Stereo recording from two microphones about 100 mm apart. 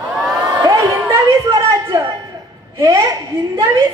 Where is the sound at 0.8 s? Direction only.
30° right (ahead or behind).